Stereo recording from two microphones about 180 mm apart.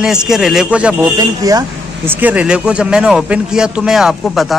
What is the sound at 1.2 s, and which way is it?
Speech, 20° right (ahead or behind).